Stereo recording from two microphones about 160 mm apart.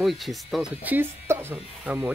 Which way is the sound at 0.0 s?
Centre (ahead or behind).